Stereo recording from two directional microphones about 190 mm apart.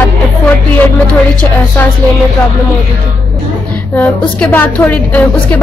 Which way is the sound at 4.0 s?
10° left (ahead or behind).